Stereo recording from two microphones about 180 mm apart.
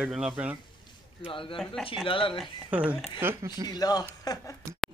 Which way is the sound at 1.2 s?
30° left (ahead or behind).